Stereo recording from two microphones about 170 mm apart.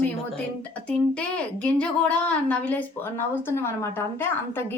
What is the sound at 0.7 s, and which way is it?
A woman's voice, 10° left (ahead or behind).